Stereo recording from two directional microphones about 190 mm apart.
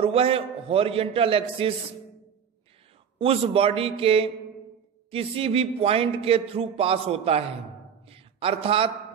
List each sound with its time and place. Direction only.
0.0 s a man's voice: 30° right (ahead or behind)
3.2 s a man's voice: 30° right (ahead or behind)
8.1 s a sound: 30° right (ahead or behind)